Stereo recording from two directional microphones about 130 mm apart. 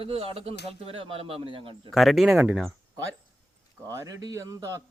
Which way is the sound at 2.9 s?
25° right (ahead or behind).